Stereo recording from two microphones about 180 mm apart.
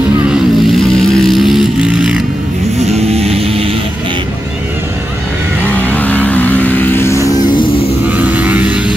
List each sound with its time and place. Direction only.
0.7 s vehicle: centre (ahead or behind)
2.8 s vehicle: 35° right (ahead or behind)
5.6 s vehicle: 10° left (ahead or behind)
8.1 s vehicle: 10° right (ahead or behind)